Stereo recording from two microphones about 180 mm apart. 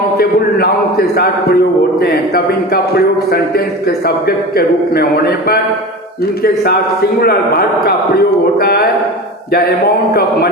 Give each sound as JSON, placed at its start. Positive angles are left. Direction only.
{"t": 0.2, "sound": "a man's voice", "side_deg": 60}
{"t": 4.0, "sound": "a man's voice", "side_deg": 60}
{"t": 7.2, "sound": "a man's voice", "side_deg": 60}